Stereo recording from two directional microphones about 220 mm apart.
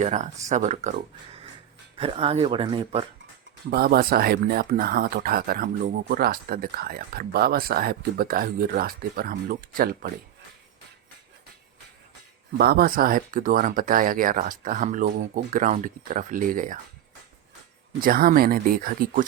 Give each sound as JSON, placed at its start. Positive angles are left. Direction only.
{"t": 0.0, "sound": "speech", "side_deg": -30}
{"t": 2.0, "sound": "speech", "side_deg": -25}
{"t": 3.7, "sound": "speech", "side_deg": -45}
{"t": 12.5, "sound": "speech", "side_deg": -45}
{"t": 18.0, "sound": "speech", "side_deg": -40}